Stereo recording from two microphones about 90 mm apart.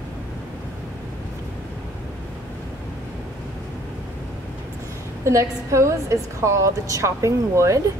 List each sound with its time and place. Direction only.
5.2 s a woman's voice: 35° right (ahead or behind)